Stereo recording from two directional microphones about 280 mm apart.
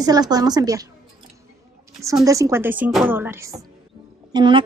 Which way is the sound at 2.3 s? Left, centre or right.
Centre.